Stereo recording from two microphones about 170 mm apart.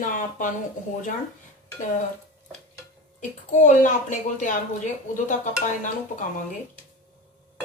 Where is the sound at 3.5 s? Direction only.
50° left (ahead or behind).